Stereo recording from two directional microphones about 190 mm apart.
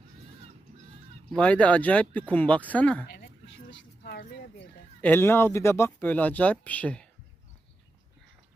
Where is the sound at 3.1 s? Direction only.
65° left (ahead or behind).